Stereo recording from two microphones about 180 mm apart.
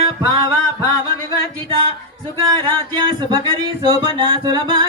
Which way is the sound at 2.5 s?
20° right (ahead or behind).